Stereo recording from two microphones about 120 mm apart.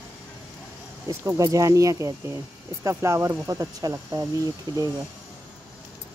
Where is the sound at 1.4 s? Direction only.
30° right (ahead or behind).